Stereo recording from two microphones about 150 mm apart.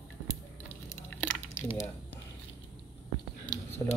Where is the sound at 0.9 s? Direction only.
15° left (ahead or behind).